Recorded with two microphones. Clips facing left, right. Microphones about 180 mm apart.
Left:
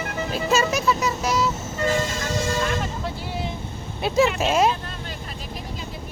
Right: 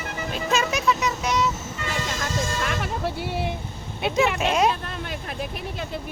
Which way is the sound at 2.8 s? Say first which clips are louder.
Right 2 dB; 65° right (ahead or behind).